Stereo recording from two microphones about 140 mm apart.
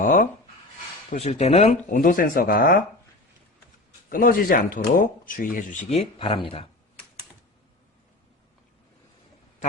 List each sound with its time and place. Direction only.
0.0 s speech: 75° left (ahead or behind)
1.1 s speech: 50° left (ahead or behind); by 2.8 s 90° left
4.1 s speech: 90° left; by 6.7 s 40° left (ahead or behind)